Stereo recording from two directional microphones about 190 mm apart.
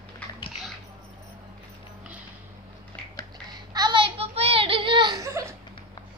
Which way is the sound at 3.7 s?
25° right (ahead or behind).